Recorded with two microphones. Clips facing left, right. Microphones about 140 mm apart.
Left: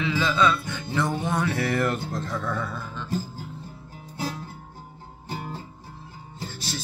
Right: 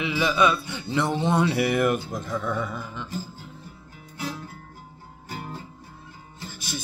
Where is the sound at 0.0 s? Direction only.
15° right (ahead or behind).